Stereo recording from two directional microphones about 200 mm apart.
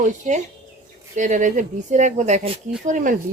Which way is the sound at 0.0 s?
35° right (ahead or behind).